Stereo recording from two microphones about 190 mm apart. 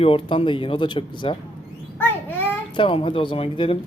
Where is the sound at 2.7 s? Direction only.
25° left (ahead or behind).